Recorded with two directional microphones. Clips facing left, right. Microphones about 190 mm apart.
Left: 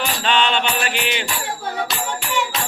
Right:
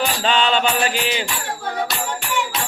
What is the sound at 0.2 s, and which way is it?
Mantra, 35° right (ahead or behind).